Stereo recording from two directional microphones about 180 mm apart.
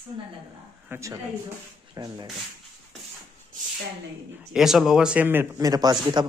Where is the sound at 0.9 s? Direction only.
15° right (ahead or behind).